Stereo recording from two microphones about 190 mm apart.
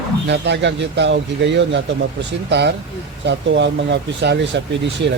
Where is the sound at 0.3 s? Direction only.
65° right (ahead or behind).